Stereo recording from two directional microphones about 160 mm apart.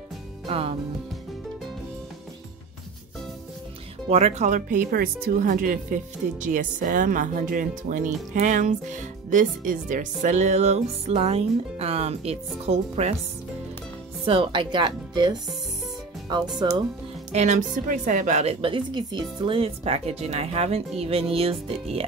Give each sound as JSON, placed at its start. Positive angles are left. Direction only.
{"t": 0.5, "sound": "a woman's voice", "side_deg": -35}
{"t": 4.1, "sound": "speech", "side_deg": -45}
{"t": 14.2, "sound": "speech", "side_deg": -30}
{"t": 17.3, "sound": "a woman's voice", "side_deg": -45}